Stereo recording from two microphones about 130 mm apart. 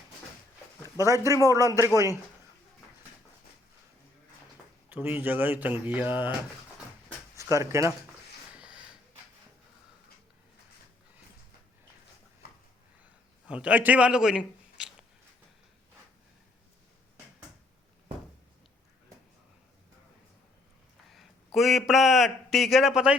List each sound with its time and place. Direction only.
0.8 s a man's voice: 25° right (ahead or behind)
4.9 s speech: 15° right (ahead or behind)
7.3 s speech: 25° right (ahead or behind)
8.5 s a sound: 5° right (ahead or behind)
13.5 s a man's voice: 10° right (ahead or behind)
21.1 s a man's voice: centre (ahead or behind)